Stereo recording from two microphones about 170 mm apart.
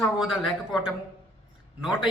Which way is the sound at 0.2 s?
Centre (ahead or behind).